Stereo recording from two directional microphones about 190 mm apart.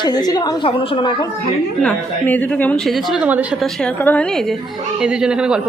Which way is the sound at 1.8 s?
10° left (ahead or behind).